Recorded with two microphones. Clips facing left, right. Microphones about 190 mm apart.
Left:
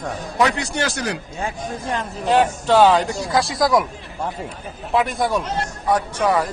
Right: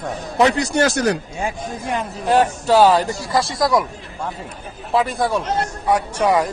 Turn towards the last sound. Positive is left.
turn(degrees=-10)  # may be behind; listen again after turning